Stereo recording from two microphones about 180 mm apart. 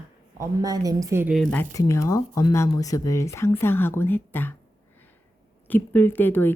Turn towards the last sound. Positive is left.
turn(degrees=10)  # may be behind; listen again after turning